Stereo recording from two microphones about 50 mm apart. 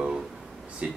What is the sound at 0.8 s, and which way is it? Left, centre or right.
Speech, right.